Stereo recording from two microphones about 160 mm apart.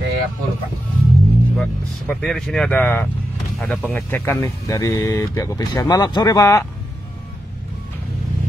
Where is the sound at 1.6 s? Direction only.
5° left (ahead or behind).